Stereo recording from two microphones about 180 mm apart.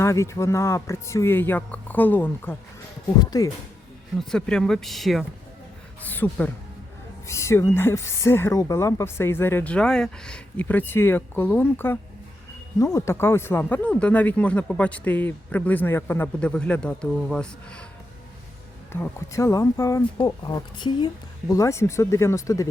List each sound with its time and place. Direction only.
0.0 s speech: 15° left (ahead or behind)
4.2 s speech: 5° left (ahead or behind)
18.9 s speech: 15° left (ahead or behind)